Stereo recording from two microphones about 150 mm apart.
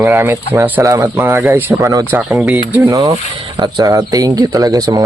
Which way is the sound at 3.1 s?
30° right (ahead or behind).